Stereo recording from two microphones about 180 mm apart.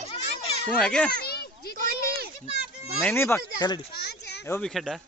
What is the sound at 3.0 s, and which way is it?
Speech, 15° left (ahead or behind).